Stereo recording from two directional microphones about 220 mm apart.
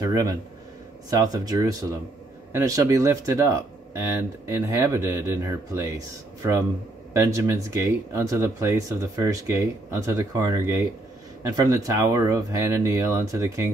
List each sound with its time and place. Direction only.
0.0 s speech: 15° right (ahead or behind)